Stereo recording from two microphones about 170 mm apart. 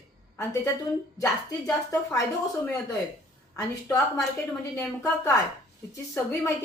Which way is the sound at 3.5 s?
20° left (ahead or behind).